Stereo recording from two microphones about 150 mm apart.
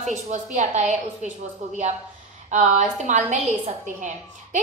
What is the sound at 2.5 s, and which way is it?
A woman's voice, 55° right (ahead or behind).